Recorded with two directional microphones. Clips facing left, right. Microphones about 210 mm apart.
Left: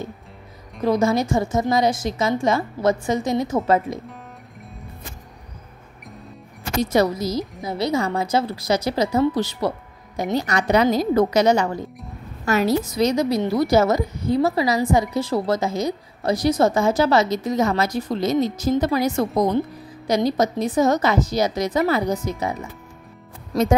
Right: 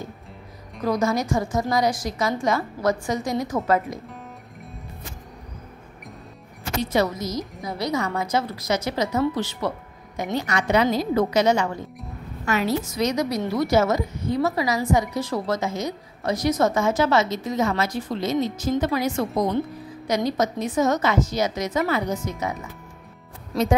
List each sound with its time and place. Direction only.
0.8 s a woman's voice: 25° left (ahead or behind)
6.8 s a woman's voice: 40° left (ahead or behind)